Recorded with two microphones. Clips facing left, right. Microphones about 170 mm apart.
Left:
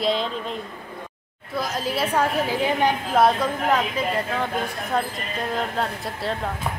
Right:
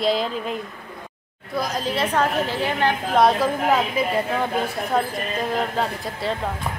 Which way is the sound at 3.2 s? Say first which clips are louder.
Right 2 dB; 5° right (ahead or behind).